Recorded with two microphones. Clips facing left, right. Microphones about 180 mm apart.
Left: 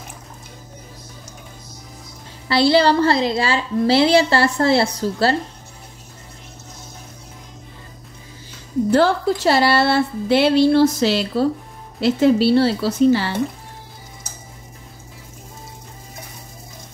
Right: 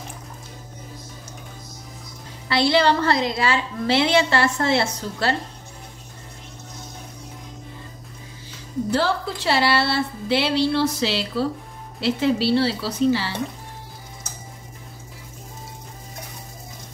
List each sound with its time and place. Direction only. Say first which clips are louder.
2.4 s a woman's voice: left 4 dB; 35° left (ahead or behind)
8.9 s speech: left 7 dB; 45° left (ahead or behind)